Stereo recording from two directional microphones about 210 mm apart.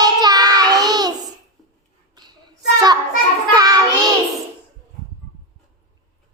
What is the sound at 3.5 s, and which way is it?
Child singing, 20° right (ahead or behind).